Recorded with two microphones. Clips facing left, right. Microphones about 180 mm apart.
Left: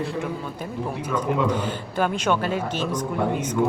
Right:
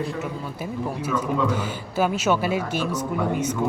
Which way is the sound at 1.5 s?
10° right (ahead or behind).